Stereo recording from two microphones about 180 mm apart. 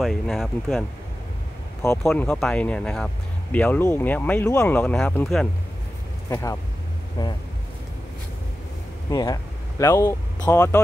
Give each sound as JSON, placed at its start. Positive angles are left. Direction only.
{"t": 0.0, "sound": "speech", "side_deg": 0}
{"t": 2.0, "sound": "speech", "side_deg": 5}
{"t": 6.3, "sound": "speech", "side_deg": 15}
{"t": 9.1, "sound": "speech", "side_deg": 20}